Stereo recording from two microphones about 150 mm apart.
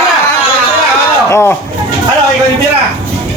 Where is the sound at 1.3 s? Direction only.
15° left (ahead or behind).